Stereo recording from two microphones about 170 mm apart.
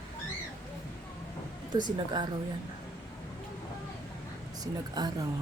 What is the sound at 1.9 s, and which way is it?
Speech, 25° right (ahead or behind).